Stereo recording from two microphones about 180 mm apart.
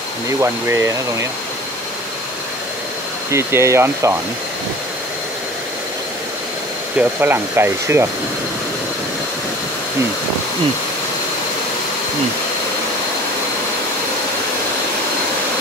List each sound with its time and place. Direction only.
0.4 s speech: 15° right (ahead or behind)
3.3 s speech: 15° right (ahead or behind)
7.0 s speech: 10° right (ahead or behind)